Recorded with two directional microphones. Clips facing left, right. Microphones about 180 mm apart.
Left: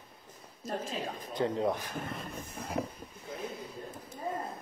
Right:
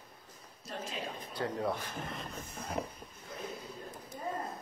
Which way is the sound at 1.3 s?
20° left (ahead or behind).